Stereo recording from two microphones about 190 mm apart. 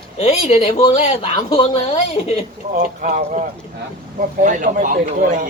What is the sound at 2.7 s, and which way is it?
Speech, 40° right (ahead or behind).